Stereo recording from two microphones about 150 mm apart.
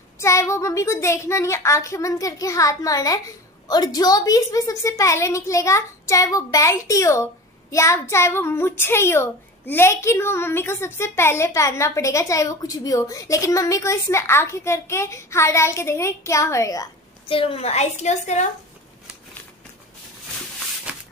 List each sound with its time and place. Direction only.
0.2 s a child's voice: 20° left (ahead or behind)
17.3 s a woman's voice: 40° left (ahead or behind)